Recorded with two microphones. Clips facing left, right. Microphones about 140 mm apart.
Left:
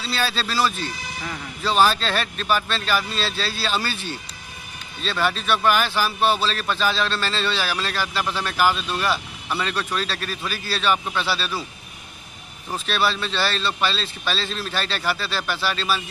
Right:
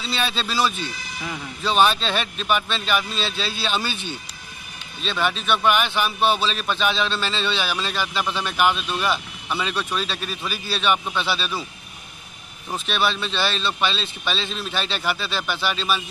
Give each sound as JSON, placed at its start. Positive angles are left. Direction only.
{"t": 0.0, "sound": "speech", "side_deg": -20}
{"t": 0.4, "sound": "a man's voice", "side_deg": 0}
{"t": 12.7, "sound": "a man's voice", "side_deg": 0}